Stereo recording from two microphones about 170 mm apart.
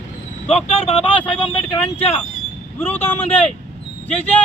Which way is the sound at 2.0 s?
35° left (ahead or behind).